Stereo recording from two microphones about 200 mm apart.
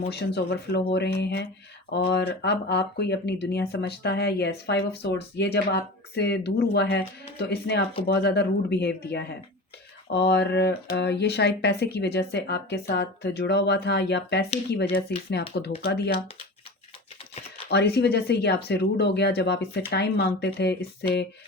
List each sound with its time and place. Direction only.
0.3 s speech: 55° left (ahead or behind)
17.7 s speech: 55° left (ahead or behind)